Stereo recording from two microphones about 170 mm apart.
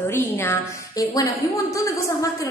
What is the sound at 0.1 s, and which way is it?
A woman's voice, 15° left (ahead or behind).